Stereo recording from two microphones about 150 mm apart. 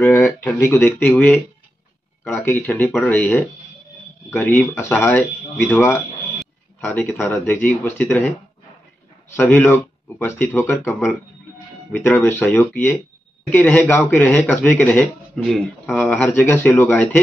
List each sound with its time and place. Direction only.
0.0 s speech: 15° left (ahead or behind)
9.3 s speech: 15° left (ahead or behind)
16.1 s speech: 10° left (ahead or behind)